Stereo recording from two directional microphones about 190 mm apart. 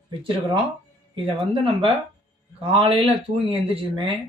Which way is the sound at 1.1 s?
25° right (ahead or behind).